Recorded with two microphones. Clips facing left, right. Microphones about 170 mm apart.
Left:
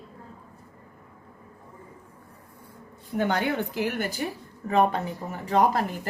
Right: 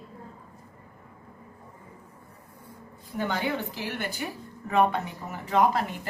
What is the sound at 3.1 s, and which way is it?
Speech, 55° left (ahead or behind).